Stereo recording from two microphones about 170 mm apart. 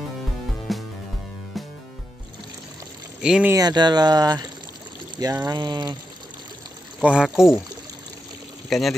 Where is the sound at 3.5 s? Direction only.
25° right (ahead or behind).